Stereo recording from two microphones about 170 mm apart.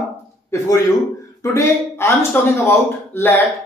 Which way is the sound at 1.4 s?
15° left (ahead or behind).